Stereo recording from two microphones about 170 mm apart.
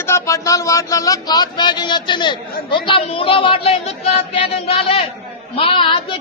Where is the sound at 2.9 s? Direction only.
30° left (ahead or behind).